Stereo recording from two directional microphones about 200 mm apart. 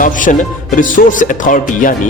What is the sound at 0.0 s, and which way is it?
Speech, 40° left (ahead or behind).